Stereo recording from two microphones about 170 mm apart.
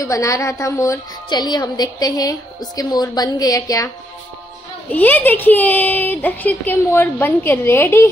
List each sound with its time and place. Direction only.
0.0 s a woman's voice: 20° left (ahead or behind)
4.9 s speech: 10° left (ahead or behind)